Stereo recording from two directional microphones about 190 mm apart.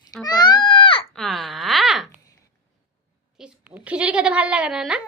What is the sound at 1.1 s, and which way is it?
Speech, centre (ahead or behind).